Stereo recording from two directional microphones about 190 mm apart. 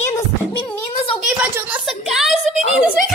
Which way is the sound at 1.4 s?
10° right (ahead or behind).